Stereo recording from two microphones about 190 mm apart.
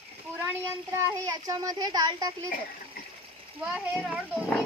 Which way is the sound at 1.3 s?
20° right (ahead or behind).